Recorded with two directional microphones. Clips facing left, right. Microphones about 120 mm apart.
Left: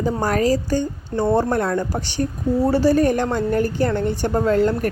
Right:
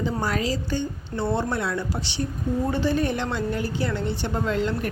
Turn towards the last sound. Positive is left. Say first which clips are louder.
# left 7 dB
turn(degrees=45)  # may be behind; listen again after turning